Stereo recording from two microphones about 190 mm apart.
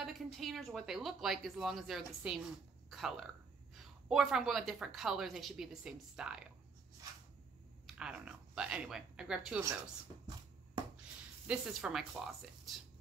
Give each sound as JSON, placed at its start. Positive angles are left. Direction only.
{"t": 0.0, "sound": "a woman's voice", "side_deg": 0}
{"t": 7.8, "sound": "speech", "side_deg": -5}
{"t": 11.4, "sound": "a woman's voice", "side_deg": -5}